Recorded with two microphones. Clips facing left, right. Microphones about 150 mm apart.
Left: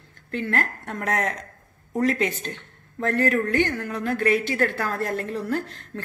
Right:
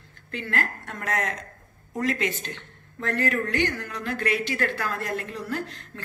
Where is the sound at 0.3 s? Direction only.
45° left (ahead or behind).